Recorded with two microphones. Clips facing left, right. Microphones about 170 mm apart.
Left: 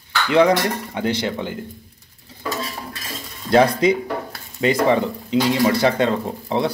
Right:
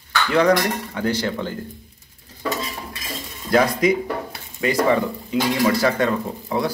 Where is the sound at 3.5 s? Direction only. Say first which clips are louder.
Left 2 dB; 30° left (ahead or behind).